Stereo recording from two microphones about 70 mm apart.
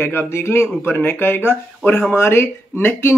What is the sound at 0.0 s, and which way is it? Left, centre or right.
Speech, left.